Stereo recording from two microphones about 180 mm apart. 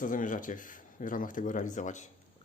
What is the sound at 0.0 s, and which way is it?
Speech, 45° left (ahead or behind).